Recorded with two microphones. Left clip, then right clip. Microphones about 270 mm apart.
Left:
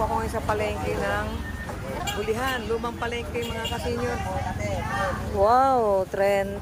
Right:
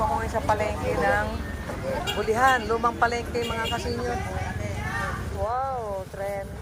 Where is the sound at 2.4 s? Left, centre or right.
Centre.